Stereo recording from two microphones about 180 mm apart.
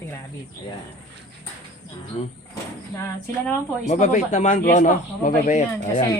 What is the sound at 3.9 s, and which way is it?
A man's voice, 40° left (ahead or behind).